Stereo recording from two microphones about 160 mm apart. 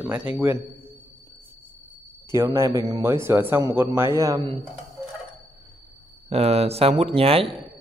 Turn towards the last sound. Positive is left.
turn(degrees=-35)  # may be behind; listen again after turning